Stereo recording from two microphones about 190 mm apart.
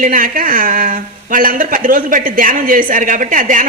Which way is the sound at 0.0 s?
45° right (ahead or behind).